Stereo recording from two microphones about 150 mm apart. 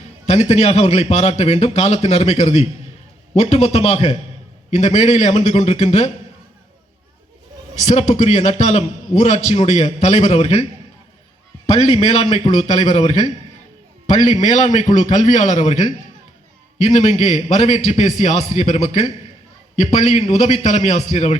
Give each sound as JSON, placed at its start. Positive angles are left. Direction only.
{"t": 0.3, "sound": "a man's voice", "side_deg": 45}
{"t": 7.8, "sound": "a man's voice", "side_deg": 50}